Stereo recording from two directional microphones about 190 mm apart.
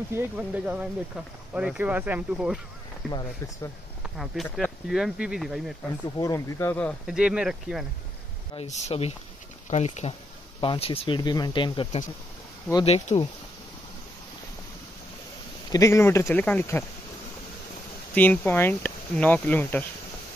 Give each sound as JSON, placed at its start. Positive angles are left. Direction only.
{"t": 0.1, "sound": "speech", "side_deg": -5}
{"t": 3.1, "sound": "speech", "side_deg": 20}
{"t": 4.5, "sound": "speech", "side_deg": 10}
{"t": 4.8, "sound": "speech", "side_deg": -5}
{"t": 6.1, "sound": "speech", "side_deg": 15}
{"t": 7.1, "sound": "speech", "side_deg": -5}
{"t": 8.5, "sound": "speech", "side_deg": 35}
{"t": 15.7, "sound": "speech", "side_deg": 15}
{"t": 18.1, "sound": "speech", "side_deg": 10}